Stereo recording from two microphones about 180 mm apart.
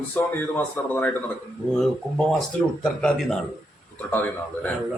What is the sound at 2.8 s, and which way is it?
A man's voice, 5° left (ahead or behind).